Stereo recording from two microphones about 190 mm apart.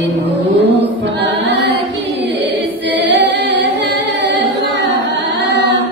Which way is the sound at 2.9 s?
70° right (ahead or behind).